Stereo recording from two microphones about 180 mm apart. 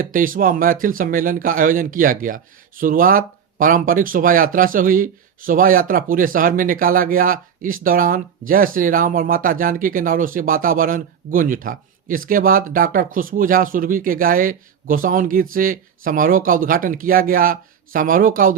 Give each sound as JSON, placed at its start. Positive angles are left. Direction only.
{"t": 0.0, "sound": "speech", "side_deg": -50}